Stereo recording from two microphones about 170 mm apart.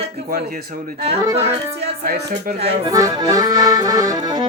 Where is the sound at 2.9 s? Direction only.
20° right (ahead or behind).